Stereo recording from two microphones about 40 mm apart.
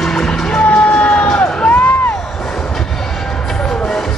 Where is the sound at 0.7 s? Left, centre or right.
Left.